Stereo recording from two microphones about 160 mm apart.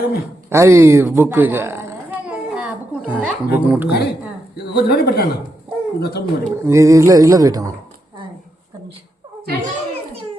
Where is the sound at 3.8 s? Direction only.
90° left.